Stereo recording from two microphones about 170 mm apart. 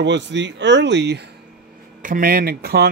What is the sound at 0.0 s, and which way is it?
Speech, 90° right.